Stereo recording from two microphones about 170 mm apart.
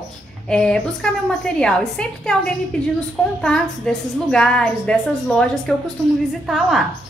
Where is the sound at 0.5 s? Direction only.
5° left (ahead or behind).